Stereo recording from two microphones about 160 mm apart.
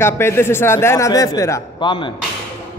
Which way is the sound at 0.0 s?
15° left (ahead or behind).